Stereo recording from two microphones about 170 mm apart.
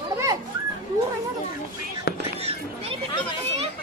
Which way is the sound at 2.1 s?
70° left (ahead or behind).